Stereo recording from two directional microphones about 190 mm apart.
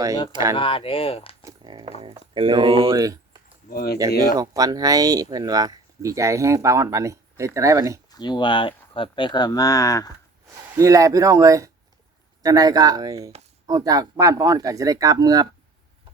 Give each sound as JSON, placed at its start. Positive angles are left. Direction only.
{"t": 0.5, "sound": "speech", "side_deg": 25}
{"t": 1.4, "sound": "a sound", "side_deg": -20}
{"t": 2.0, "sound": "speech", "side_deg": -30}
{"t": 3.7, "sound": "speech", "side_deg": 50}
{"t": 4.4, "sound": "speech", "side_deg": -20}
{"t": 8.1, "sound": "speech", "side_deg": 25}
{"t": 10.8, "sound": "speech", "side_deg": -15}